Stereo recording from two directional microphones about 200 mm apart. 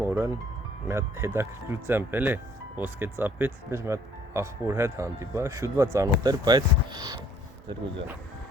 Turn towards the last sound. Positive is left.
turn(degrees=-20)  # may be behind; listen again after turning